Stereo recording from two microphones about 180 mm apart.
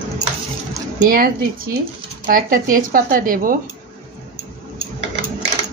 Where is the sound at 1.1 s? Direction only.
55° right (ahead or behind).